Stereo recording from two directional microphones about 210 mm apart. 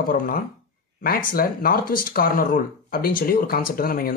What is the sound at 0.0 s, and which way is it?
Speech, 45° left (ahead or behind).